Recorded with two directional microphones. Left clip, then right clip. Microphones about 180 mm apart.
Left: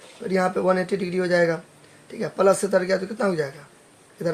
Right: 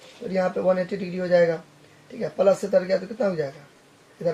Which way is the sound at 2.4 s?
55° left (ahead or behind).